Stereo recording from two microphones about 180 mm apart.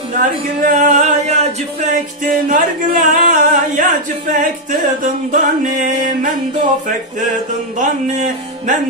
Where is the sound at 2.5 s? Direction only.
50° right (ahead or behind).